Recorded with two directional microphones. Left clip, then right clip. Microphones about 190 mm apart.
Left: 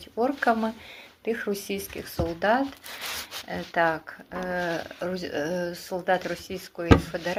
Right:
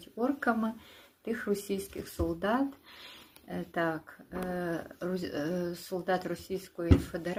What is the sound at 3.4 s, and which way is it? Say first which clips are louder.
Speech: left 8 dB; 20° right (ahead or behind).